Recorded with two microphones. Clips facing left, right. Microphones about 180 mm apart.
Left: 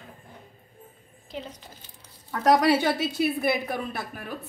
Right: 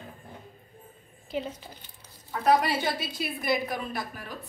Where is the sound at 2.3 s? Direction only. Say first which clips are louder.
Left 4 dB; 75° left (ahead or behind).